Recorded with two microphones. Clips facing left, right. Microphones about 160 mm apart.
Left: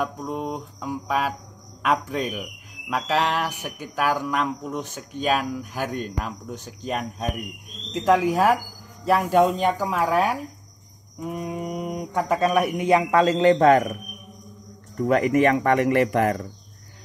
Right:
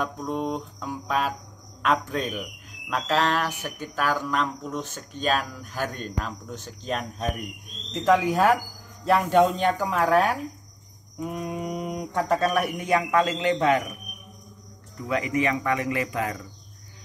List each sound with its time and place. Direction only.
0.0 s speech: 5° left (ahead or behind)
12.4 s a man's voice: 15° left (ahead or behind)
13.2 s a man's voice: 40° left (ahead or behind)
15.0 s speech: 50° left (ahead or behind)